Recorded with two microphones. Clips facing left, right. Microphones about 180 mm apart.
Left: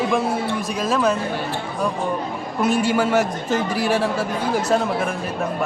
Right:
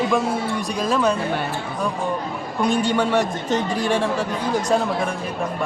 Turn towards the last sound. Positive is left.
turn(degrees=5)  # may be behind; listen again after turning